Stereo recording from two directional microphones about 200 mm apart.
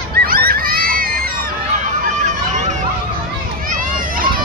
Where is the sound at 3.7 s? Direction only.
45° right (ahead or behind).